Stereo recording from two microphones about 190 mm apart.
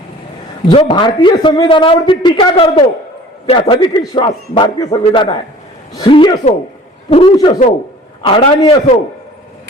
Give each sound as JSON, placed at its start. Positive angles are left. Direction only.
{"t": 0.7, "sound": "a man's voice", "side_deg": 25}